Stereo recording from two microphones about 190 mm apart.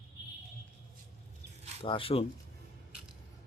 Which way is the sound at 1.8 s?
30° left (ahead or behind).